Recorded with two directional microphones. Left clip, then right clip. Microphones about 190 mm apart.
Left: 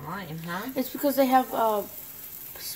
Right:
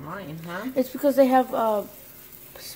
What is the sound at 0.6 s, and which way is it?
Speech, 5° right (ahead or behind).